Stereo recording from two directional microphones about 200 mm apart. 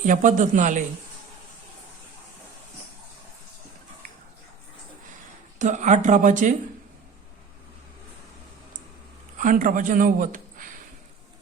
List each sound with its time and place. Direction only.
0.0 s speech: 40° right (ahead or behind)
5.5 s speech: 40° right (ahead or behind)
9.4 s speech: 40° right (ahead or behind)